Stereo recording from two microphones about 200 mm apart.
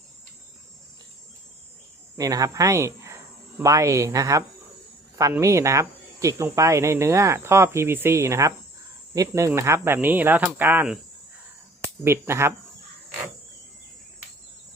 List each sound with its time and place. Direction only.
2.1 s speech: 15° right (ahead or behind)
12.0 s speech: 10° right (ahead or behind)